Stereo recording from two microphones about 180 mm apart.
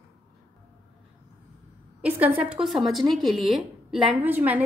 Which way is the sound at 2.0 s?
10° right (ahead or behind).